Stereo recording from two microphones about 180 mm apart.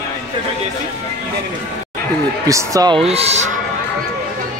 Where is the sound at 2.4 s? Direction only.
20° right (ahead or behind).